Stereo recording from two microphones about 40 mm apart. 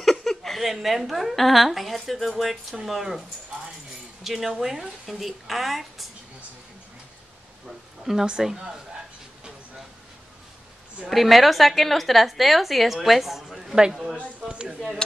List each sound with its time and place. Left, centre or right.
0.0 s a woman's voice: centre
7.6 s a sound: centre
8.4 s speech: centre
11.1 s a woman's voice: centre
13.7 s speech: centre